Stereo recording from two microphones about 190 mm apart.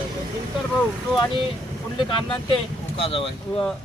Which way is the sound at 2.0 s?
25° left (ahead or behind).